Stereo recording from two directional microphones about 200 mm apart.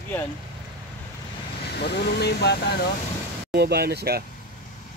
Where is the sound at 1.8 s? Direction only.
55° left (ahead or behind).